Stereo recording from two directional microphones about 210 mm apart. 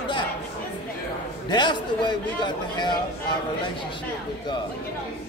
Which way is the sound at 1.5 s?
20° left (ahead or behind).